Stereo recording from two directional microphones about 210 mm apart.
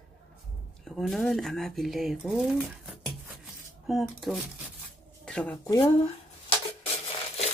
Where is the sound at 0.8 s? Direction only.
Centre (ahead or behind).